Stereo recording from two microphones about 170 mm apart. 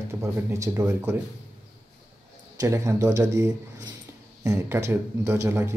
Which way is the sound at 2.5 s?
20° right (ahead or behind).